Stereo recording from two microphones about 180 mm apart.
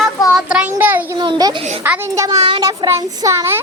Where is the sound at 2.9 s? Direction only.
15° right (ahead or behind).